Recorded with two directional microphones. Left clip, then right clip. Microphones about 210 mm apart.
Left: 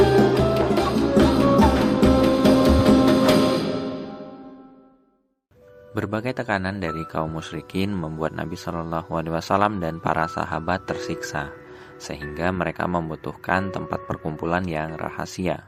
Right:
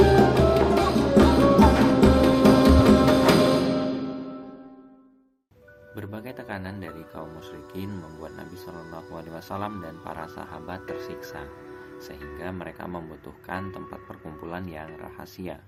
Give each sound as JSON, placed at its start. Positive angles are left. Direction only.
{"t": 0.0, "sound": "music", "side_deg": 0}
{"t": 5.9, "sound": "speech", "side_deg": 40}